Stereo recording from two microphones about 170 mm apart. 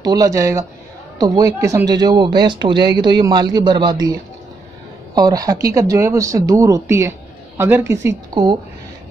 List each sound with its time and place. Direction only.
0.0 s speech: 20° right (ahead or behind)